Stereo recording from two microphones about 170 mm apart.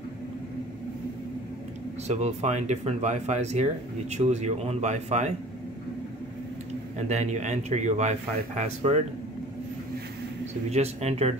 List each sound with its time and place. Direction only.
2.0 s speech: 40° right (ahead or behind)
7.0 s speech: 40° right (ahead or behind)
10.4 s speech: 40° right (ahead or behind)